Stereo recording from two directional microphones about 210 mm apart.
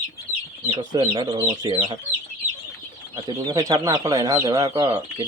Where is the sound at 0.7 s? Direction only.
25° right (ahead or behind).